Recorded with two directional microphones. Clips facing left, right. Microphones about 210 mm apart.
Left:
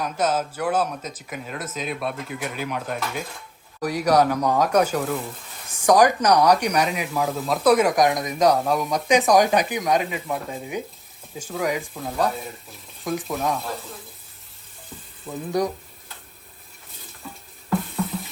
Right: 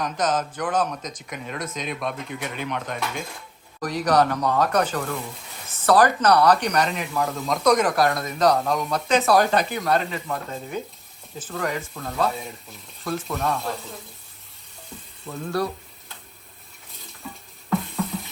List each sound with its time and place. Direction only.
0.0 s speech: 10° left (ahead or behind)
15.3 s speech: 15° left (ahead or behind)
17.2 s music: centre (ahead or behind)